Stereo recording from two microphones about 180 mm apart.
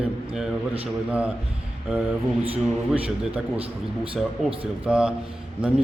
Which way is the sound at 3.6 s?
30° right (ahead or behind).